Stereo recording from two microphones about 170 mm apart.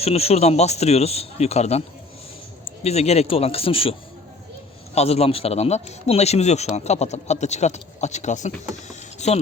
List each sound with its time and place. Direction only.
0.0 s speech: 35° left (ahead or behind)
2.8 s speech: 40° left (ahead or behind)
4.9 s speech: 35° left (ahead or behind)